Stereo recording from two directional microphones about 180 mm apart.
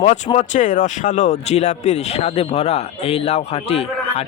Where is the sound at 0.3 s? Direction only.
45° left (ahead or behind).